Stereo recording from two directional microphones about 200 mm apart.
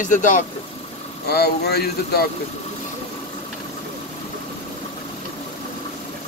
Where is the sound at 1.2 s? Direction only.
55° left (ahead or behind).